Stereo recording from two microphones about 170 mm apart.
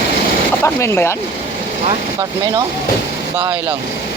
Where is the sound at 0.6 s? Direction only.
15° left (ahead or behind).